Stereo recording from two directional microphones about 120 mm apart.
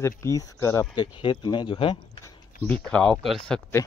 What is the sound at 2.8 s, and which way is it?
Speech, 5° left (ahead or behind).